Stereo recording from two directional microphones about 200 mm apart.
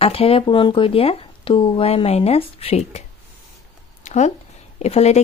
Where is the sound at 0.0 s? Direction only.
30° left (ahead or behind).